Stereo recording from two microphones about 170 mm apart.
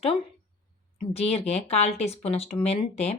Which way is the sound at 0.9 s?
35° left (ahead or behind).